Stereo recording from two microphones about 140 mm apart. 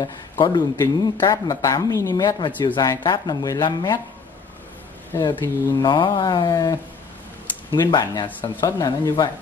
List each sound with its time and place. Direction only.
0.0 s speech: 30° left (ahead or behind)
5.3 s speech: 15° left (ahead or behind)
5.8 s speech: 35° left (ahead or behind)